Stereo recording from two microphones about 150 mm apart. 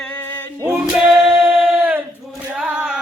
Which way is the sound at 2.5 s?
5° right (ahead or behind).